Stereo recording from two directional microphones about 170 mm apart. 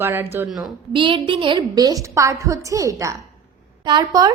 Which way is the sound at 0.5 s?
30° right (ahead or behind).